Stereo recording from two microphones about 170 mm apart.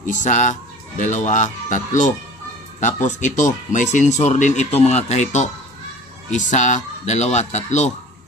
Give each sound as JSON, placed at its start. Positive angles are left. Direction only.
{"t": 0.0, "sound": "speech", "side_deg": 45}